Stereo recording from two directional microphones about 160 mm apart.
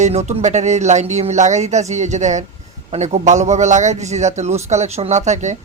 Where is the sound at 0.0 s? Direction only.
45° right (ahead or behind).